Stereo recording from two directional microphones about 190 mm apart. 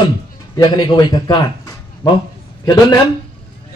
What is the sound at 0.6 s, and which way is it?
Speech, 20° left (ahead or behind).